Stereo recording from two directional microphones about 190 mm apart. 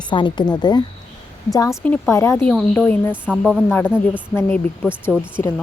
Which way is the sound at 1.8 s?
10° left (ahead or behind).